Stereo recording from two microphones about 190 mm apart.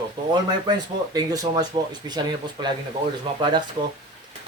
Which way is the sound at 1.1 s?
20° right (ahead or behind).